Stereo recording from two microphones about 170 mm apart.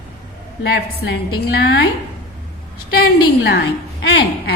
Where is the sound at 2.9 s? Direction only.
65° left (ahead or behind); by 4.5 s 85° left.